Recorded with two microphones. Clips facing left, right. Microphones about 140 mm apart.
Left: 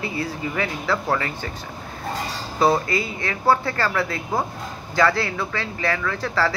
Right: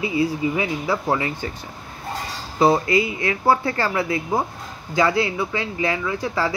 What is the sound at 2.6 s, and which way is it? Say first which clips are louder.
Speech: right 3 dB; 20° right (ahead or behind).